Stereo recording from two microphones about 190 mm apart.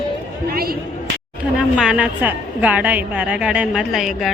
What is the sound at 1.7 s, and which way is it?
A woman's voice, 5° right (ahead or behind).